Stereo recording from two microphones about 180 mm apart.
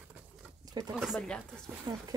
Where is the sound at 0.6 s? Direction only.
20° right (ahead or behind).